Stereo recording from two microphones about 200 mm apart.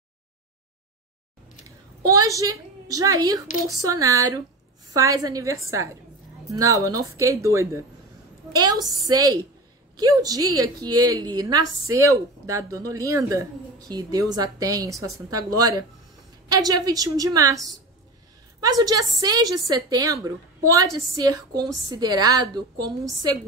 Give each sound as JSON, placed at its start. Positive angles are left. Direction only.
{"t": 2.0, "sound": "a woman's voice", "side_deg": -15}